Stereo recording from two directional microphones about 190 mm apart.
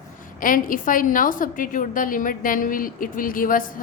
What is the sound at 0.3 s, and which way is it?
A woman's voice, 45° left (ahead or behind).